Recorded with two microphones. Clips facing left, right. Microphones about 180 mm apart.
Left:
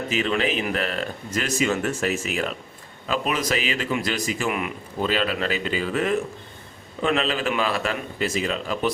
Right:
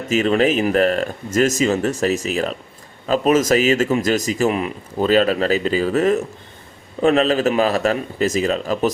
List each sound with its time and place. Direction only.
0.1 s speech: 40° right (ahead or behind)